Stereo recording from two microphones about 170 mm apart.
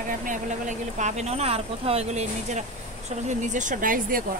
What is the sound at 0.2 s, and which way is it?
Speech, 50° right (ahead or behind).